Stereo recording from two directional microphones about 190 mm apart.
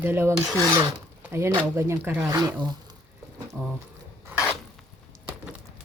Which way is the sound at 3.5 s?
10° right (ahead or behind).